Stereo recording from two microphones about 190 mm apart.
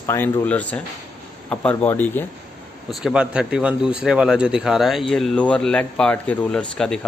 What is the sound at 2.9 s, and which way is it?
A man's voice, 5° right (ahead or behind).